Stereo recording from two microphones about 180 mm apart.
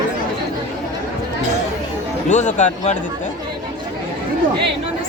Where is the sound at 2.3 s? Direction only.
40° left (ahead or behind).